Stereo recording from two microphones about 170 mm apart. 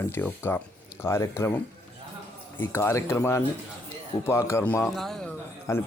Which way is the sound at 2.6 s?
15° left (ahead or behind).